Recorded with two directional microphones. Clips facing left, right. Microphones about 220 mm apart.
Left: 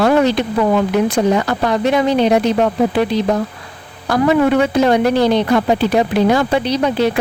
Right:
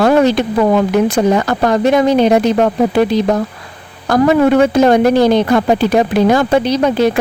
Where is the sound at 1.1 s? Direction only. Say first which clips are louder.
Right 2 dB; 45° right (ahead or behind).